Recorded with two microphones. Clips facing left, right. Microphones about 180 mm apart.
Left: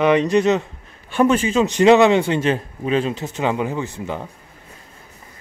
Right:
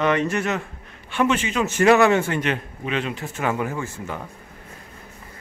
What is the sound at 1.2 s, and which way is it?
Speech, 35° left (ahead or behind).